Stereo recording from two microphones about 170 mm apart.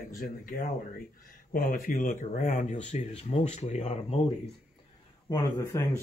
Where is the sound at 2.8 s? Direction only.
35° left (ahead or behind).